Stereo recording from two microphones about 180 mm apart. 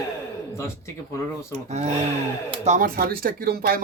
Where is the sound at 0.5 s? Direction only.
15° left (ahead or behind).